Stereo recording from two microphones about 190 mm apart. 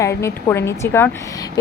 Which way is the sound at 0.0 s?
15° left (ahead or behind).